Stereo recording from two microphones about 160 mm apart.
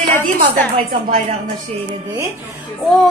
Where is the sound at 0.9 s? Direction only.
60° right (ahead or behind).